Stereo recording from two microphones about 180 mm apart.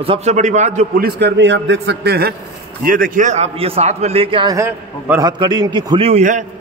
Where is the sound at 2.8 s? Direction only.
50° right (ahead or behind); by 5.3 s 15° right (ahead or behind).